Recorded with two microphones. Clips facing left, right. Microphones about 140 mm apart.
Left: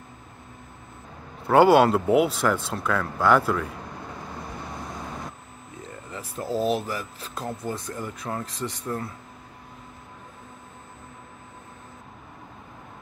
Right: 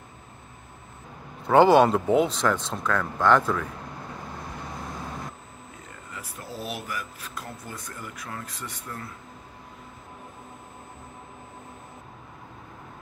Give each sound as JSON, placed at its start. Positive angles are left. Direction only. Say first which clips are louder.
{"t": 1.5, "sound": "speech", "louder": "even", "side_deg": 5}
{"t": 6.1, "sound": "speech", "louder": "left 10 dB", "side_deg": 30}